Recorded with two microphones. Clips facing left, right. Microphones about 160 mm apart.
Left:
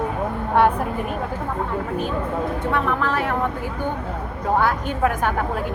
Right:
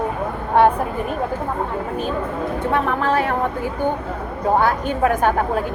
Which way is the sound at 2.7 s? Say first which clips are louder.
Right 4 dB; 30° right (ahead or behind).